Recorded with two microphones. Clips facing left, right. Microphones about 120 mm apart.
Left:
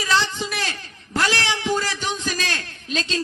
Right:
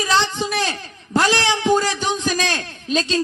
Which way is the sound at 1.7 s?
20° right (ahead or behind).